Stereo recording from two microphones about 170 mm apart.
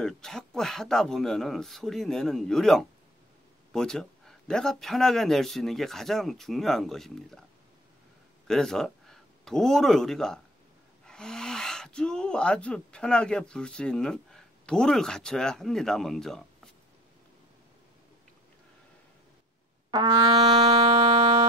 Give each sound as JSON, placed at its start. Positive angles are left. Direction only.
{"t": 0.0, "sound": "a man's voice", "side_deg": 5}
{"t": 8.5, "sound": "speech", "side_deg": 5}
{"t": 19.9, "sound": "brass instrument", "side_deg": -25}